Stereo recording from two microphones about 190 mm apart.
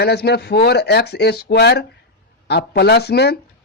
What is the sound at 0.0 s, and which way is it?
Speech, 60° left (ahead or behind).